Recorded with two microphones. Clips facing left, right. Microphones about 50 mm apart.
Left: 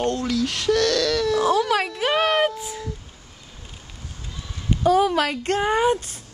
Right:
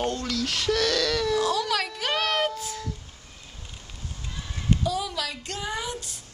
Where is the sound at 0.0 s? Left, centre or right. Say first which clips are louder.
Left 5 dB; centre.